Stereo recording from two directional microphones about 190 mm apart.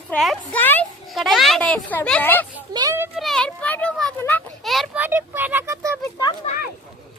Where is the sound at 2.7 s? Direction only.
20° right (ahead or behind).